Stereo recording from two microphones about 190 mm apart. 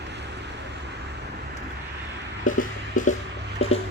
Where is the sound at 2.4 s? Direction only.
45° left (ahead or behind).